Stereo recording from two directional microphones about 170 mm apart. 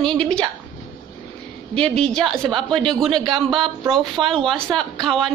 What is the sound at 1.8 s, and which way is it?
A woman's voice, 5° left (ahead or behind).